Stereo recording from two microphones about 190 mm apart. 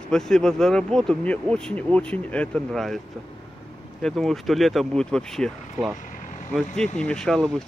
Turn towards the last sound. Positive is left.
turn(degrees=5)  # may be behind; listen again after turning